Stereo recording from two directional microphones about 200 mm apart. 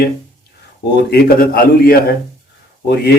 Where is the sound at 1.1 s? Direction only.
50° left (ahead or behind).